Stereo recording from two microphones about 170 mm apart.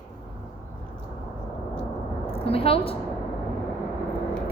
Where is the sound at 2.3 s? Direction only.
35° left (ahead or behind).